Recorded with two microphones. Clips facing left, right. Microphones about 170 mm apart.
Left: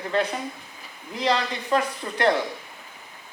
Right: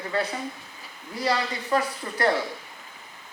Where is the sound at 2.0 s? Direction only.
40° left (ahead or behind).